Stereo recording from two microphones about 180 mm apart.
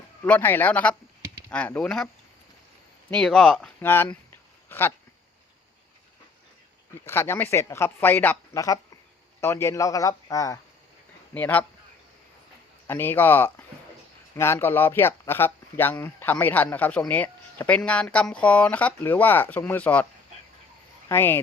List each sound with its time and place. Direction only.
0.3 s speech: 10° left (ahead or behind)
3.1 s speech: 5° left (ahead or behind)
7.0 s a man's voice: 15° left (ahead or behind)
12.9 s speech: 10° left (ahead or behind)
21.1 s speech: 10° left (ahead or behind)